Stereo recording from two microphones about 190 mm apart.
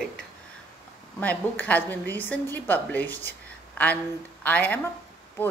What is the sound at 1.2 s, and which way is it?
A woman's voice, 10° left (ahead or behind).